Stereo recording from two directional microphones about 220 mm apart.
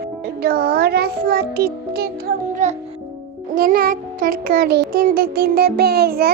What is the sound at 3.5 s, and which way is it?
Child singing, 40° right (ahead or behind).